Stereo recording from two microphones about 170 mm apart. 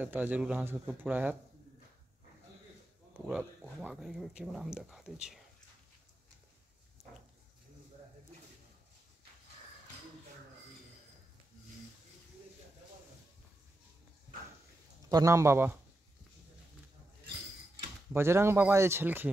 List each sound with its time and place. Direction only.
0.0 s speech: 10° right (ahead or behind)
3.3 s speech: 5° right (ahead or behind)
15.0 s speech: 20° right (ahead or behind)
18.1 s speech: 15° right (ahead or behind)